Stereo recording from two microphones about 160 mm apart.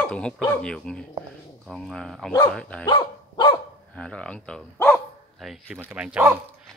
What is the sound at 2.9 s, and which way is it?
Dog, 25° left (ahead or behind).